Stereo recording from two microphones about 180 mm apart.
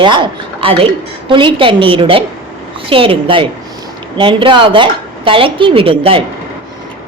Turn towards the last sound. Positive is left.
turn(degrees=-30)  # may be behind; listen again after turning